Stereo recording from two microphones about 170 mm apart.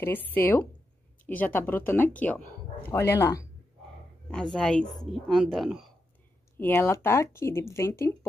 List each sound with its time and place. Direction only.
0.0 s speech: 10° left (ahead or behind)
4.3 s a woman's voice: 5° left (ahead or behind)
6.6 s speech: 10° left (ahead or behind)